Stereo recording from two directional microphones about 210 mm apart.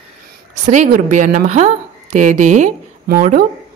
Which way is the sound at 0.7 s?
35° right (ahead or behind).